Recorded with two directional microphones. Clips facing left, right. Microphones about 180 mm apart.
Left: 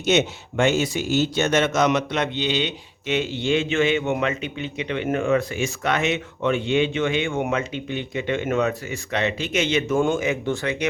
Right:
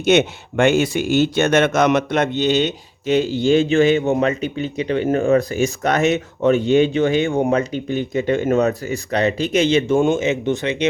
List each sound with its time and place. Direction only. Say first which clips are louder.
0.0 s speech: right 5 dB; 55° right (ahead or behind); by 10.8 s 20° right (ahead or behind)